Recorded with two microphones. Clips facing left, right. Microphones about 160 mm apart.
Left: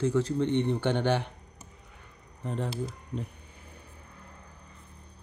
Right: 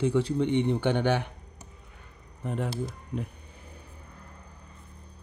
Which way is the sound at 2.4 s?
10° right (ahead or behind).